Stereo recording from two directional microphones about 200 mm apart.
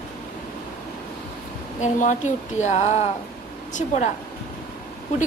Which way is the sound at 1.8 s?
35° left (ahead or behind).